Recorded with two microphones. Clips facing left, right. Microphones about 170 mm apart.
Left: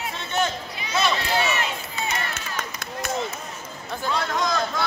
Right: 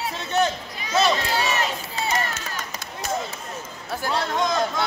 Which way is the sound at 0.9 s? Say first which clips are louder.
Right 2 dB; 35° right (ahead or behind).